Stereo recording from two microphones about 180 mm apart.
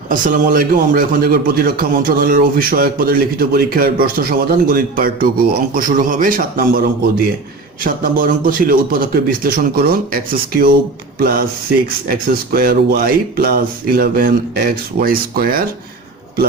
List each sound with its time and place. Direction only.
0.1 s a man's voice: 50° right (ahead or behind)
7.9 s a man's voice: 50° right (ahead or behind)